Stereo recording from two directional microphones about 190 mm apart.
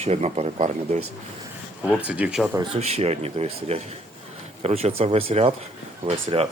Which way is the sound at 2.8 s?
35° right (ahead or behind).